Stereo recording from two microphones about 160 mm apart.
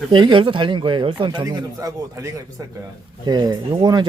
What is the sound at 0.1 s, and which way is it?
Speech, 30° right (ahead or behind).